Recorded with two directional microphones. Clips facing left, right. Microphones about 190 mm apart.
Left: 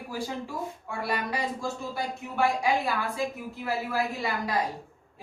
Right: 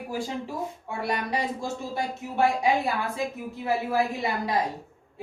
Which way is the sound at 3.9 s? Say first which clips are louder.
Right 3 dB; 20° right (ahead or behind).